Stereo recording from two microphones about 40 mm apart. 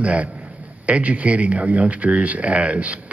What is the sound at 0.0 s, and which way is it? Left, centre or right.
A man's voice, right.